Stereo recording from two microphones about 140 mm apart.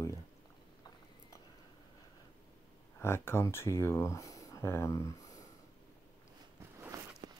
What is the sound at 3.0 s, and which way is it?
Speech, 20° left (ahead or behind).